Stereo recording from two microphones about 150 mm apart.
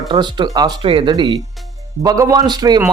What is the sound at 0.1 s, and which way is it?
Speech, 30° right (ahead or behind).